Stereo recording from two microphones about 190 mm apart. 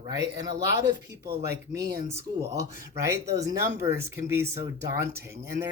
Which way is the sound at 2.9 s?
15° right (ahead or behind).